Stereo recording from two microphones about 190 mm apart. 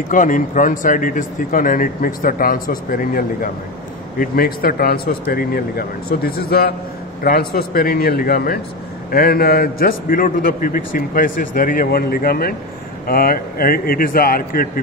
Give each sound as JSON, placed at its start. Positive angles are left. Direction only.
{"t": 0.1, "sound": "a man's voice", "side_deg": 45}